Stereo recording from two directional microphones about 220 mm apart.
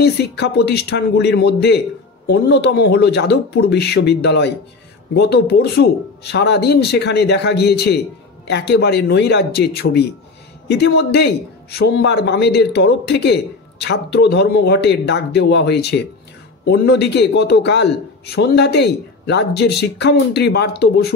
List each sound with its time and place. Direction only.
0.0 s speech: 50° left (ahead or behind)